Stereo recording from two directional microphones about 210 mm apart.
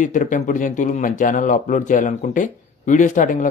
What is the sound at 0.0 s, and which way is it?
A man's voice, 35° left (ahead or behind).